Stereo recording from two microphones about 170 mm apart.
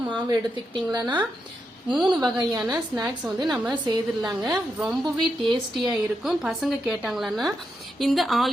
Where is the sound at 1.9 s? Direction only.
Centre (ahead or behind).